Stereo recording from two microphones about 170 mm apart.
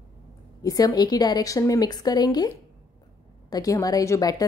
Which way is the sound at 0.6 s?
20° left (ahead or behind).